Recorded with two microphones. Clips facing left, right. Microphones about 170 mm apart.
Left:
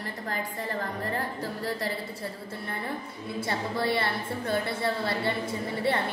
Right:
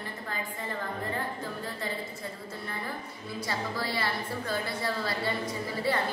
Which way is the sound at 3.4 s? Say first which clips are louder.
Left 4 dB; 25° left (ahead or behind).